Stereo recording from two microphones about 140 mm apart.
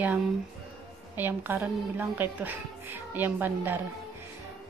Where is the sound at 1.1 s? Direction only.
15° right (ahead or behind).